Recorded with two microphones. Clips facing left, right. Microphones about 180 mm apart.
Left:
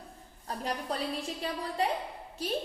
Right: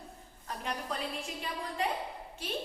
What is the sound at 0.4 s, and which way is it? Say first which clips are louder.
A woman's voice: left 3 dB; 35° left (ahead or behind).